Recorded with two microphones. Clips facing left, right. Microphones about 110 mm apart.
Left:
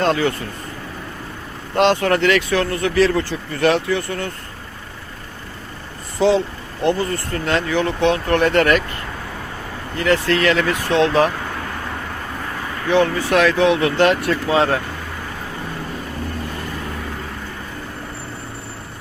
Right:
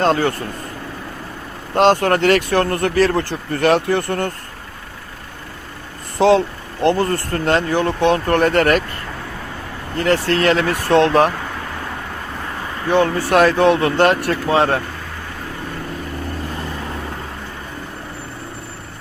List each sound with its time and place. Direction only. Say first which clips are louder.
0.0 s speech: right 2 dB; 45° right (ahead or behind)
1.7 s speech: right 2 dB; 45° right (ahead or behind)
6.1 s speech: right 3 dB; 60° right (ahead or behind); by 8.8 s 40° right (ahead or behind)
10.0 s speech: right 1 dB; 35° right (ahead or behind); by 11.3 s 55° right (ahead or behind)
12.9 s speech: right 1 dB; 50° right (ahead or behind)